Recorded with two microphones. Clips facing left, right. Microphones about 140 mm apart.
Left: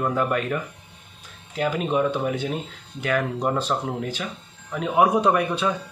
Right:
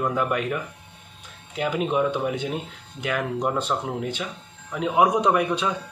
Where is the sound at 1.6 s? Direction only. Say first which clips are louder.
Left 1 dB; 15° right (ahead or behind).